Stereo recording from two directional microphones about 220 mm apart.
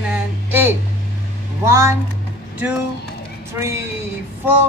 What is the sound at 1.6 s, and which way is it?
A woman's voice, 15° right (ahead or behind).